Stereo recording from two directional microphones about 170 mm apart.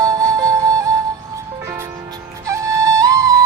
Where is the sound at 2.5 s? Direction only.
20° right (ahead or behind).